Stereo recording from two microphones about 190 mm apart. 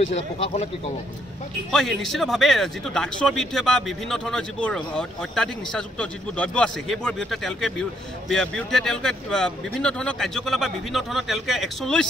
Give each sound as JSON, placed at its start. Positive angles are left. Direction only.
{"t": 0.0, "sound": "speech", "side_deg": 35}
{"t": 1.7, "sound": "speech", "side_deg": 0}